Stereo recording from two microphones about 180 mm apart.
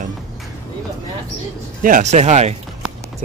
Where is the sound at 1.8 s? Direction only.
45° right (ahead or behind).